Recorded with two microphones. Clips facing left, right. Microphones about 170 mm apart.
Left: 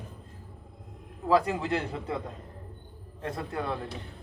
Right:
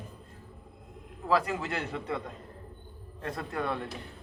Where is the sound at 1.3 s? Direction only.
30° left (ahead or behind).